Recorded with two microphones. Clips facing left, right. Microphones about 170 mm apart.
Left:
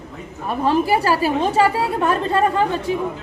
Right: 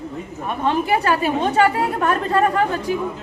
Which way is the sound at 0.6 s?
35° left (ahead or behind).